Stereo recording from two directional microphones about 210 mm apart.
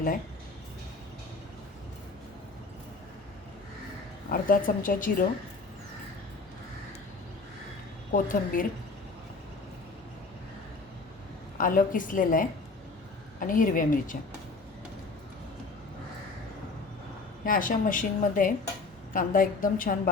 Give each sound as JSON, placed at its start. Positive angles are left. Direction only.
{"t": 4.3, "sound": "speech", "side_deg": 40}
{"t": 8.1, "sound": "speech", "side_deg": 40}
{"t": 11.5, "sound": "speech", "side_deg": 40}
{"t": 17.4, "sound": "speech", "side_deg": 40}